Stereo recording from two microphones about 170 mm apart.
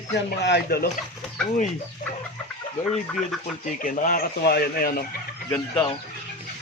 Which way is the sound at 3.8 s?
55° left (ahead or behind).